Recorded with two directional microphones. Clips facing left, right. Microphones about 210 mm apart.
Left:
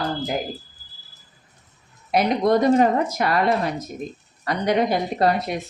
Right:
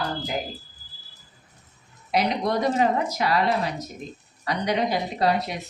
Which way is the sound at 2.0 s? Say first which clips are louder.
Left 5 dB; 50° left (ahead or behind).